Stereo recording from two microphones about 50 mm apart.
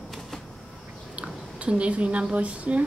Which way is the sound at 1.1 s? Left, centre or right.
Right.